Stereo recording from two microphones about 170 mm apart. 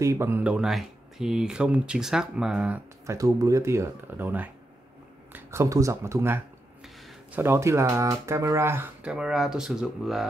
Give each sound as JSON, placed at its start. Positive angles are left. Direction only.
{"t": 0.0, "sound": "speech", "side_deg": -15}
{"t": 3.2, "sound": "speech", "side_deg": -20}